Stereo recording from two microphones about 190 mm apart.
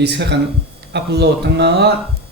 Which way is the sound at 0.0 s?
60° right (ahead or behind).